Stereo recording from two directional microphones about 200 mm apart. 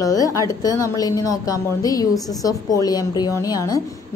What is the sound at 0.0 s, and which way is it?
A woman's voice, 15° left (ahead or behind).